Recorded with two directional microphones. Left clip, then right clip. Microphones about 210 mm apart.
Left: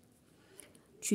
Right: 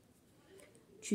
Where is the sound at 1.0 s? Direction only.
35° left (ahead or behind).